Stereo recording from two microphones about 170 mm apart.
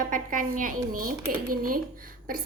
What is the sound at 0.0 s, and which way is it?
A woman's voice, 50° right (ahead or behind).